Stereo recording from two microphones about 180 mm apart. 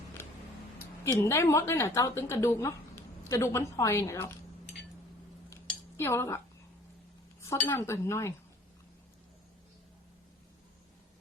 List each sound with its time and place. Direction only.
1.0 s a woman's voice: 15° left (ahead or behind)
6.0 s a woman's voice: 15° left (ahead or behind)
7.5 s a woman's voice: 15° left (ahead or behind)